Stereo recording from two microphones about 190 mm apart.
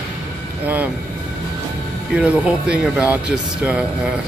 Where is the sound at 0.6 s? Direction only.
10° right (ahead or behind).